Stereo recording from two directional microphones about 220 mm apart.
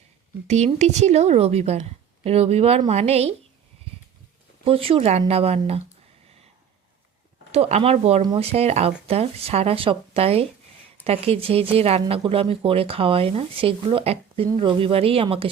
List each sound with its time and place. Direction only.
0.4 s speech: 30° right (ahead or behind)
4.6 s speech: 25° right (ahead or behind)
7.5 s speech: 30° right (ahead or behind)